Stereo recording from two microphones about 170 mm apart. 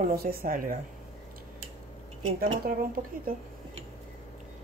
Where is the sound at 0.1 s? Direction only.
60° right (ahead or behind).